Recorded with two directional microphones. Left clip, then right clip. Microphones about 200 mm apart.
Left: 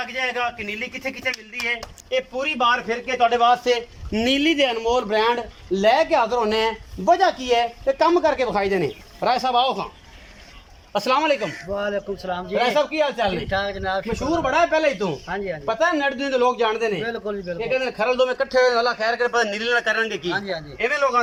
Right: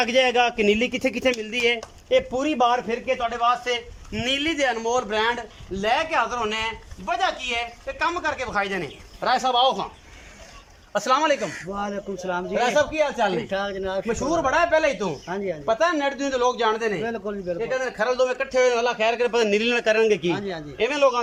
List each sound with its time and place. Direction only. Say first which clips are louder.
0.0 s speech: right 5 dB; 55° right (ahead or behind)
2.0 s speech: right 2 dB; 35° right (ahead or behind)
3.2 s a man's voice: left 7 dB; 10° left (ahead or behind)
9.2 s speech: even; 10° left (ahead or behind)
10.9 s speech: left 1 dB; 5° left (ahead or behind)
11.8 s a man's voice: left 3 dB; 15° right (ahead or behind)
12.5 s speech: left 1 dB; 5° left (ahead or behind)
13.5 s a man's voice: left 3 dB; 10° right (ahead or behind)
14.1 s speech: right 1 dB; 5° left (ahead or behind)
17.7 s a man's voice: left 4 dB; 5° left (ahead or behind); by 20.1 s 25° right (ahead or behind)
20.3 s a man's voice: left 3 dB; 10° right (ahead or behind)
20.7 s speech: right 1 dB; 30° right (ahead or behind)